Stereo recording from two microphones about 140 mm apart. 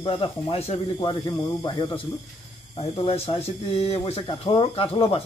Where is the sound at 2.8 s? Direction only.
45° left (ahead or behind).